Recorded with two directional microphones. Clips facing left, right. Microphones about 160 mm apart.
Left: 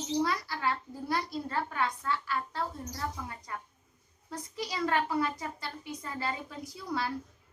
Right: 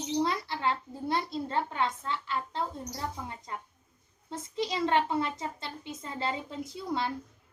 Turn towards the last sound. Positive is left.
turn(degrees=-25)  # may be behind; listen again after turning